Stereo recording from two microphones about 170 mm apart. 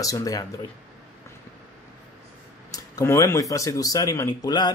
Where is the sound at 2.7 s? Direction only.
20° left (ahead or behind).